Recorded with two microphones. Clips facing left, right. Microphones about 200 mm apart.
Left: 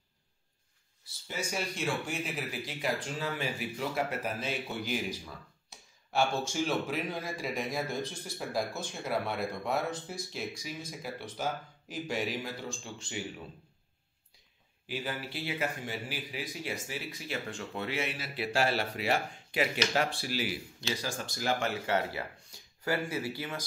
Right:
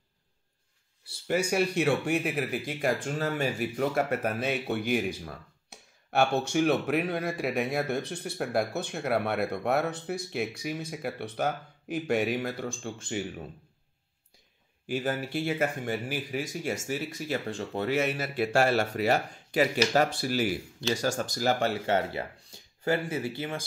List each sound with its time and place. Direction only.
1.2 s speech: 65° right (ahead or behind)
14.9 s speech: 50° right (ahead or behind); by 23.6 s 25° right (ahead or behind)